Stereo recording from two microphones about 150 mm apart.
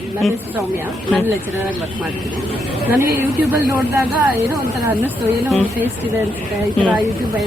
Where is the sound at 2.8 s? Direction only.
20° right (ahead or behind).